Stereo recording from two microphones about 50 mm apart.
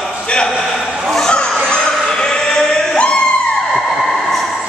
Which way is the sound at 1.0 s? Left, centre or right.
Centre.